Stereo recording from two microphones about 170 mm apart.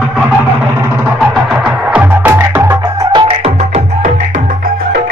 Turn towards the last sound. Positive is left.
turn(degrees=-35)  # may be behind; listen again after turning